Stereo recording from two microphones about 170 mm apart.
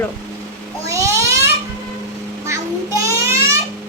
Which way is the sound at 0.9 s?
15° right (ahead or behind).